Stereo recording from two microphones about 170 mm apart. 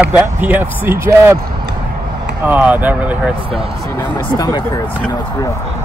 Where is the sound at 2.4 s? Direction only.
10° right (ahead or behind).